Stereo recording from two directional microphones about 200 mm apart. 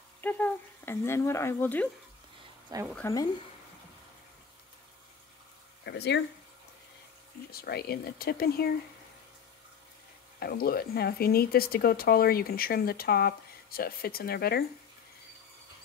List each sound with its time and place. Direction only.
0.2 s speech: 10° left (ahead or behind)
2.9 s speech: 10° left (ahead or behind)
5.9 s speech: 60° left (ahead or behind)
7.5 s speech: 50° left (ahead or behind)
10.4 s speech: 50° left (ahead or behind)